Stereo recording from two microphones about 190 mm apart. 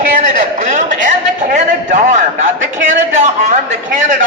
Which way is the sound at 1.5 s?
40° right (ahead or behind).